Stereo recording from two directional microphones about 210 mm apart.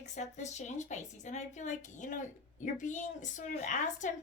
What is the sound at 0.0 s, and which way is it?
A woman's voice, 35° left (ahead or behind).